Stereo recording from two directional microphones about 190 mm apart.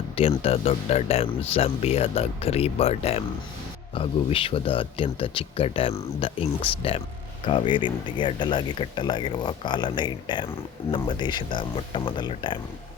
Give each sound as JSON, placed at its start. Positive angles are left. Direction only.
{"t": 0.2, "sound": "speech", "side_deg": 30}